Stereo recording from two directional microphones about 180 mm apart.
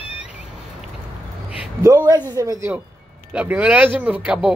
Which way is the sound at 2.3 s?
20° right (ahead or behind).